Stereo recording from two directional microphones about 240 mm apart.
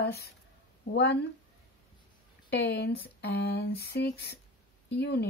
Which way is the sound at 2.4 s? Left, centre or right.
Left.